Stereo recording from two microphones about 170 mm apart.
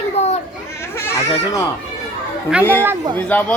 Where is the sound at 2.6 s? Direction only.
10° left (ahead or behind).